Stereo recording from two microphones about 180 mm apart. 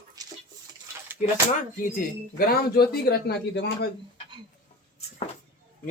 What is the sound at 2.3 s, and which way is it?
Speech, 55° left (ahead or behind).